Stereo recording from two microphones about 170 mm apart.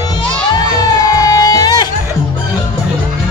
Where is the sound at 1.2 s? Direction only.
20° left (ahead or behind).